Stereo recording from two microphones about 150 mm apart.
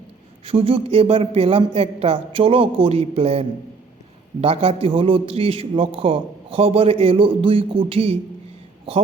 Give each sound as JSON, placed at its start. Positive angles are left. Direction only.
{"t": 0.4, "sound": "a man's voice", "side_deg": -40}